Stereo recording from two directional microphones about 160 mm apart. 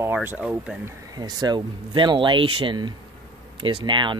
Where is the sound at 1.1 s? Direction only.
25° right (ahead or behind).